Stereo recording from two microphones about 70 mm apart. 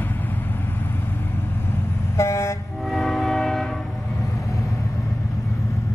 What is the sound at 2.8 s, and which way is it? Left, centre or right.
Train, centre.